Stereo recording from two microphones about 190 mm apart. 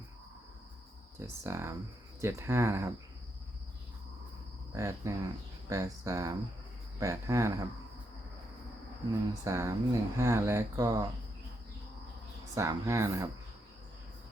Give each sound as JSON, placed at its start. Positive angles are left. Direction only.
{"t": 1.2, "sound": "speech", "side_deg": -15}
{"t": 4.7, "sound": "speech", "side_deg": -15}
{"t": 9.4, "sound": "speech", "side_deg": -15}
{"t": 12.5, "sound": "speech", "side_deg": -15}